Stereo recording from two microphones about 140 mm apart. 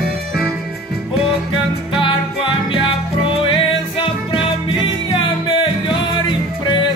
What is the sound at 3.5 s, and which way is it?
Music, 40° left (ahead or behind).